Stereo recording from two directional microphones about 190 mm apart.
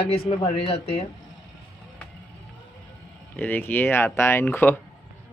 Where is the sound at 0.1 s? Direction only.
30° left (ahead or behind).